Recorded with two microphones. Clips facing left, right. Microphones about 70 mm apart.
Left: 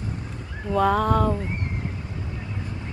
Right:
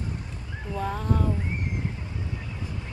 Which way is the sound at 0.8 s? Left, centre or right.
Left.